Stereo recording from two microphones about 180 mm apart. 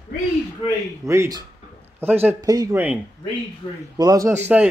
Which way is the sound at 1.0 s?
15° right (ahead or behind).